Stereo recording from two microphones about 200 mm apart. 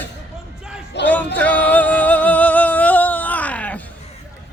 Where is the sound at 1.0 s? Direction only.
60° left (ahead or behind).